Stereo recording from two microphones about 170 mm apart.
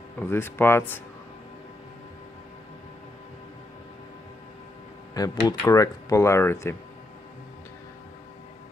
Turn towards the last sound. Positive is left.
turn(degrees=15)  # may be behind; listen again after turning